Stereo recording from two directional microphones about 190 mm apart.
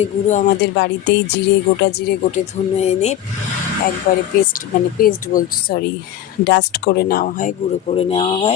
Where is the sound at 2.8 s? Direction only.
35° left (ahead or behind).